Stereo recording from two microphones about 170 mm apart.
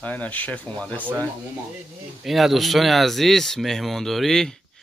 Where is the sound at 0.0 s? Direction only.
10° left (ahead or behind).